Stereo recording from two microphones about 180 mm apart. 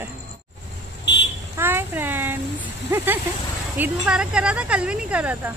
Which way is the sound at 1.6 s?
10° right (ahead or behind).